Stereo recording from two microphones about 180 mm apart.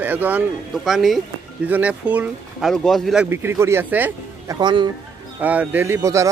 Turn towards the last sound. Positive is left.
turn(degrees=-15)  # may be behind; listen again after turning